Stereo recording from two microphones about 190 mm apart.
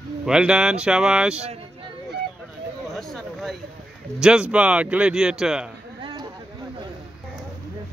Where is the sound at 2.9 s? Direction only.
Centre (ahead or behind).